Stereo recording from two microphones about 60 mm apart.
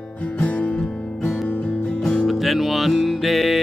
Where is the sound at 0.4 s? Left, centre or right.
Left.